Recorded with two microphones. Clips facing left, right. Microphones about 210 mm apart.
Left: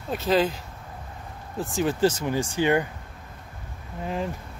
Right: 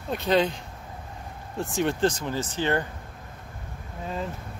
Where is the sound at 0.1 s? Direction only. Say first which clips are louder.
Even; centre (ahead or behind).